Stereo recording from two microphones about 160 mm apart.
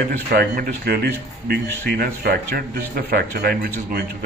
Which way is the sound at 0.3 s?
75° right (ahead or behind).